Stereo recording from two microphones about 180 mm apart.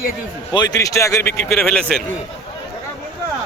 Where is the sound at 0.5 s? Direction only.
20° left (ahead or behind); by 2.0 s 5° left (ahead or behind).